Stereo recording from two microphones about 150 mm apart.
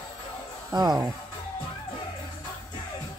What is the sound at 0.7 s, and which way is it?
Speech, 30° right (ahead or behind).